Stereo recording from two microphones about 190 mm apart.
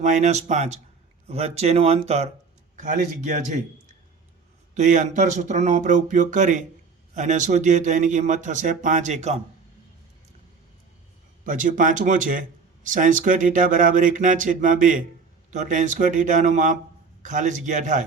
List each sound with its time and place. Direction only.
0.0 s speech: 40° right (ahead or behind)
4.7 s speech: 40° right (ahead or behind)
11.4 s speech: 45° right (ahead or behind)